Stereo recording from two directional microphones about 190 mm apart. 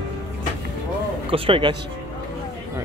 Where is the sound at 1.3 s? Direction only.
25° right (ahead or behind).